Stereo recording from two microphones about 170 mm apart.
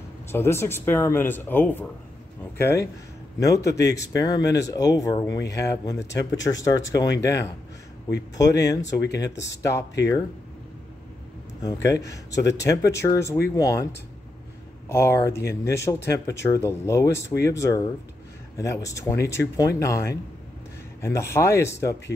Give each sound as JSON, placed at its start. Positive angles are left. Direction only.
{"t": 0.3, "sound": "speech", "side_deg": 15}
{"t": 11.6, "sound": "speech", "side_deg": 20}
{"t": 14.9, "sound": "speech", "side_deg": 15}